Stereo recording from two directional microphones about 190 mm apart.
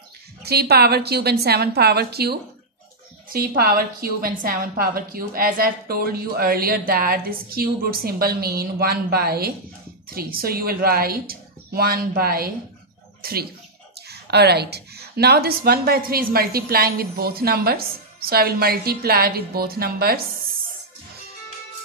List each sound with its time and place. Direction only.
0.4 s a woman's voice: 55° right (ahead or behind)